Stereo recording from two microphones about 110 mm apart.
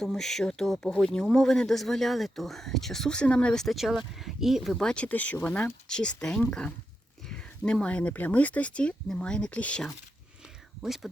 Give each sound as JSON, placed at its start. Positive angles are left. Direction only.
{"t": 0.0, "sound": "speech", "side_deg": 5}
{"t": 10.8, "sound": "speech", "side_deg": 0}